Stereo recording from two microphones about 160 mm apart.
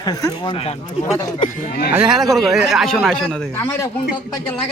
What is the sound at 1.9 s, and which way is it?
Speech, 5° right (ahead or behind).